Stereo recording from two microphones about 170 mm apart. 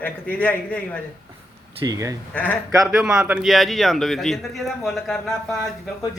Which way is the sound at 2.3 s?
10° left (ahead or behind).